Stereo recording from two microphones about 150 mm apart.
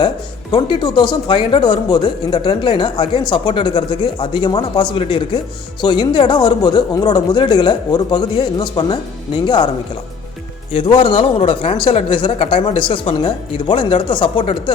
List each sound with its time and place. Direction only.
0.5 s speech: 30° left (ahead or behind)
10.7 s speech: 35° left (ahead or behind)